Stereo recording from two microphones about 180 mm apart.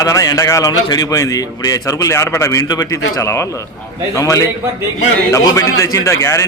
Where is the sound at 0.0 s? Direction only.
20° left (ahead or behind).